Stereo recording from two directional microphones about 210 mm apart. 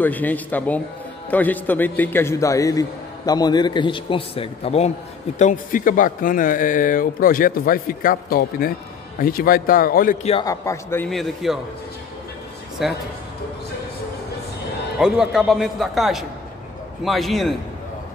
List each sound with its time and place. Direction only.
0.0 s a man's voice: 10° left (ahead or behind); by 10.1 s 40° left (ahead or behind)
10.4 s a man's voice: 15° left (ahead or behind)
11.1 s speech: centre (ahead or behind)
12.8 s speech: centre (ahead or behind)
15.0 s speech: 5° right (ahead or behind)